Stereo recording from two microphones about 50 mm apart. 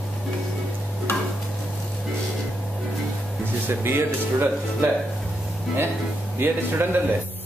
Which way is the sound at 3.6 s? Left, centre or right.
Right.